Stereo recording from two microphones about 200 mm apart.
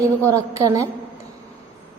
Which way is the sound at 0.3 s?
15° right (ahead or behind).